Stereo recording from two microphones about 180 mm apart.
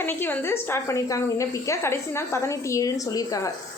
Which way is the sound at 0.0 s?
10° left (ahead or behind).